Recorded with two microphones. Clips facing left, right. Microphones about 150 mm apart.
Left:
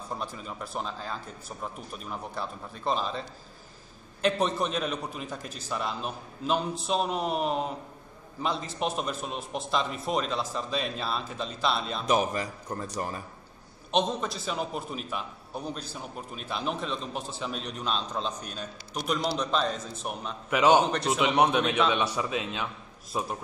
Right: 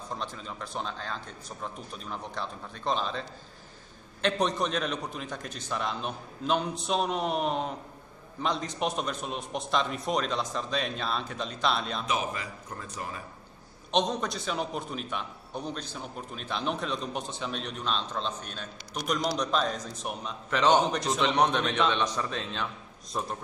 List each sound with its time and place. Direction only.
0.1 s a man's voice: 10° left (ahead or behind)
12.1 s a man's voice: 40° left (ahead or behind)
13.9 s a man's voice: 5° left (ahead or behind)